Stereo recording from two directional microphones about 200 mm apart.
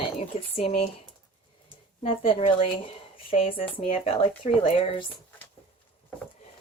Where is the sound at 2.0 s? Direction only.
30° left (ahead or behind).